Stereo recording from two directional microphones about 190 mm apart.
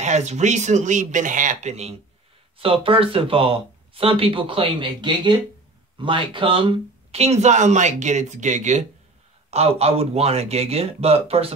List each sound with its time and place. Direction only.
0.0 s speech: 40° right (ahead or behind)